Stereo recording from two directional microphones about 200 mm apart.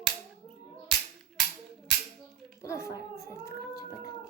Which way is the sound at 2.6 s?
15° left (ahead or behind).